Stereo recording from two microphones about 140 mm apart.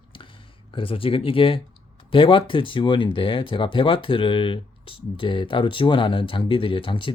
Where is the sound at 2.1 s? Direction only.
40° left (ahead or behind).